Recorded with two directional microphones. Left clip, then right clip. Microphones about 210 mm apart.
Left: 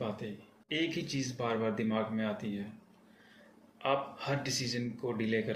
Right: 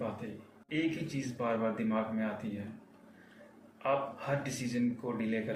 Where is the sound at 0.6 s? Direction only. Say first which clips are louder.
Even; 55° left (ahead or behind).